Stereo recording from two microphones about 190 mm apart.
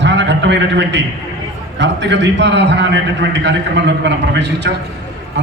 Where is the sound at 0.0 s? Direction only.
70° right (ahead or behind).